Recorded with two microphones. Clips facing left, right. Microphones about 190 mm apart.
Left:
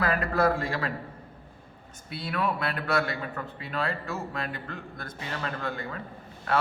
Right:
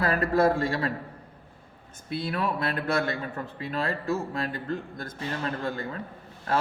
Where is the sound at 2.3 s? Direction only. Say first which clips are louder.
Left 1 dB; 30° right (ahead or behind).